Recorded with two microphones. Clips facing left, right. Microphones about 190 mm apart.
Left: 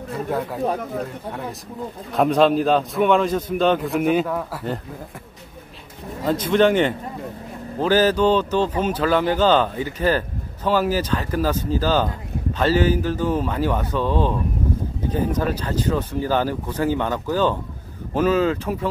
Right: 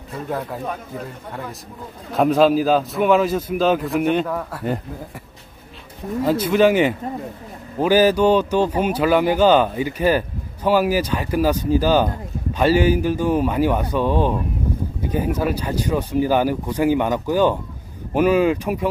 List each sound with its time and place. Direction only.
0.3 s a man's voice: centre (ahead or behind)
2.1 s a man's voice: centre (ahead or behind)
6.2 s a man's voice: 10° right (ahead or behind)